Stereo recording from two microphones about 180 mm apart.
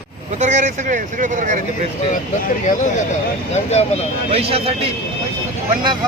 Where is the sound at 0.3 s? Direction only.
40° right (ahead or behind).